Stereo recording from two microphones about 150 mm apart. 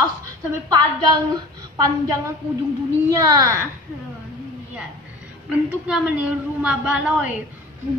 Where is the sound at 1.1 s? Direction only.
25° right (ahead or behind).